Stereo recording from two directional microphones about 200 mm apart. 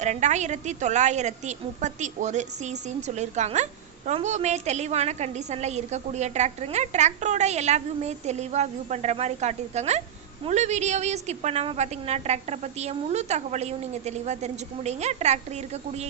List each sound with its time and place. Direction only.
0.0 s a woman's voice: 35° right (ahead or behind)